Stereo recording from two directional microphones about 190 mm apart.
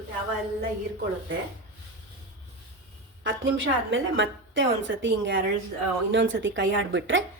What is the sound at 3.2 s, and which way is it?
A woman's voice, 90° right.